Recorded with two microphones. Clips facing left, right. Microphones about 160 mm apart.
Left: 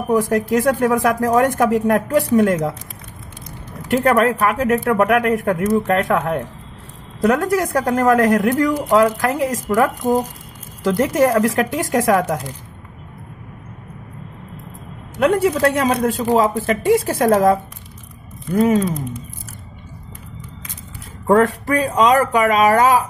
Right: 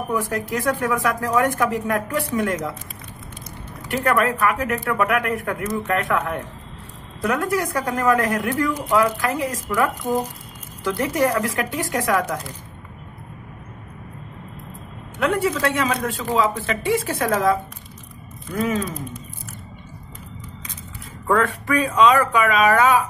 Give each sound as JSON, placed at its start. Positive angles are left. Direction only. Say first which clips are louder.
{"t": 0.1, "sound": "speech", "louder": "left 9 dB", "side_deg": 40}
{"t": 3.9, "sound": "speech", "louder": "left 5 dB", "side_deg": 45}
{"t": 5.8, "sound": "speech", "louder": "left 6 dB", "side_deg": 40}
{"t": 7.2, "sound": "speech", "louder": "left 5 dB", "side_deg": 40}
{"t": 15.1, "sound": "speech", "louder": "left 5 dB", "side_deg": 40}
{"t": 21.3, "sound": "speech", "louder": "left 5 dB", "side_deg": 40}